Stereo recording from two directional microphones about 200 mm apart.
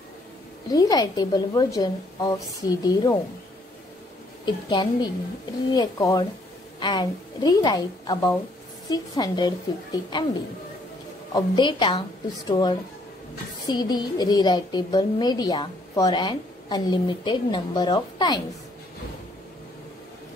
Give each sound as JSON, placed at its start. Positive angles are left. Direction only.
{"t": 0.7, "sound": "a woman's voice", "side_deg": 20}
{"t": 4.5, "sound": "a woman's voice", "side_deg": 20}
{"t": 11.3, "sound": "a woman's voice", "side_deg": 25}